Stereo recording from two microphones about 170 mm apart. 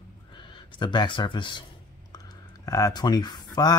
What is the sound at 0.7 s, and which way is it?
Speech, 25° left (ahead or behind).